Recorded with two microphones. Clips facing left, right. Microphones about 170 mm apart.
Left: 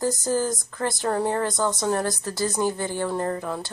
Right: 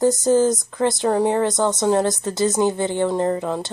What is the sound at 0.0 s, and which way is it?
Speech, 20° right (ahead or behind).